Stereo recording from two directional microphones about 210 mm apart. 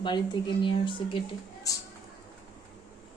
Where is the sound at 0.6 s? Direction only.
25° left (ahead or behind).